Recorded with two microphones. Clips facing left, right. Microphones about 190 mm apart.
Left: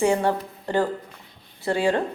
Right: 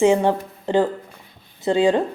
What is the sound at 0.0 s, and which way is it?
A woman's voice, 15° right (ahead or behind).